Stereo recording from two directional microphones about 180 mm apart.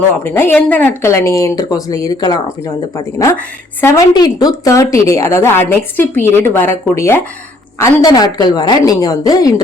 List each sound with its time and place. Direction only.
0.3 s a woman's voice: 10° left (ahead or behind)